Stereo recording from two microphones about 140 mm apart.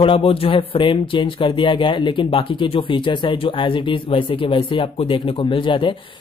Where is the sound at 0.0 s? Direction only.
40° left (ahead or behind).